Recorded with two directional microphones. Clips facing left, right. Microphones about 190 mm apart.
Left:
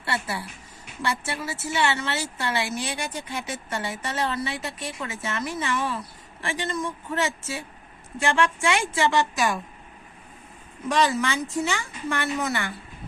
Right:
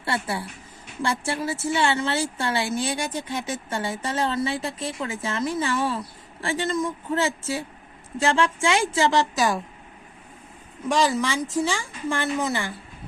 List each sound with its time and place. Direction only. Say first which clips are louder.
0.0 s speech: right 2 dB; 30° right (ahead or behind)
10.8 s speech: right 1 dB; 25° right (ahead or behind)